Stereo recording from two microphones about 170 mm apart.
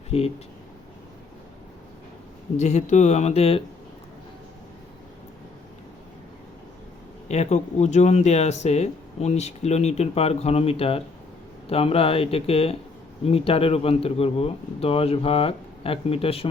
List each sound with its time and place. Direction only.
0.1 s speech: 40° left (ahead or behind)
2.6 s speech: 40° left (ahead or behind)
7.3 s speech: 40° left (ahead or behind)